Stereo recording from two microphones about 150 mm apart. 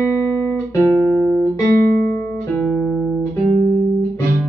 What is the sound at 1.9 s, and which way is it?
Music, 80° right.